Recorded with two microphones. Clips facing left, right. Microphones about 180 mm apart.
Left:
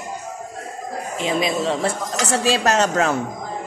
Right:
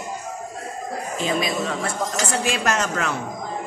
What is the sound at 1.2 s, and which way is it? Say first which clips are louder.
A woman's voice: left 3 dB; 25° left (ahead or behind).